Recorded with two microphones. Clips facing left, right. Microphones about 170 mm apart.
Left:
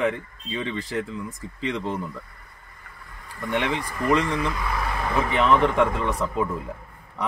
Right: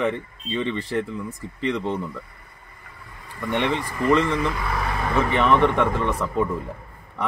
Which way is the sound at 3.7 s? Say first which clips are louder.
Right 3 dB; 15° left (ahead or behind).